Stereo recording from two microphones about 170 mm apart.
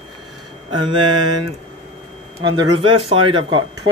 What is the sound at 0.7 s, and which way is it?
Speech, 25° right (ahead or behind).